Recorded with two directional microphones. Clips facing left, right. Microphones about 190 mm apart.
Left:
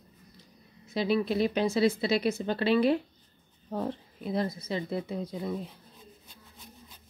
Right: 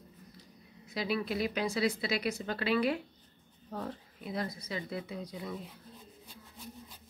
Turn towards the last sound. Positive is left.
turn(degrees=-10)  # may be behind; listen again after turning